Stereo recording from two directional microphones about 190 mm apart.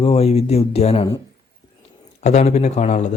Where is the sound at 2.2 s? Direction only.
35° left (ahead or behind).